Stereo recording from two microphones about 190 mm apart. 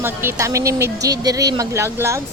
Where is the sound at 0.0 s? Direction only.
10° right (ahead or behind).